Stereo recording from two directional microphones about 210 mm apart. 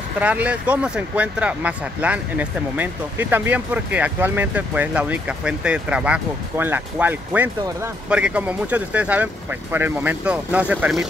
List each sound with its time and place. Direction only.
0.2 s speech: 5° right (ahead or behind)